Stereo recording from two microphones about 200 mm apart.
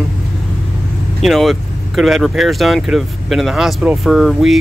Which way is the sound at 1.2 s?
Centre (ahead or behind).